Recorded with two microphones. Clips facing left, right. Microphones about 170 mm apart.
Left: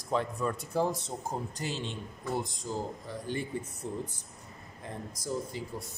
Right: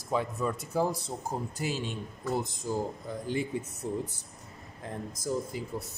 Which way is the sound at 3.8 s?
15° right (ahead or behind).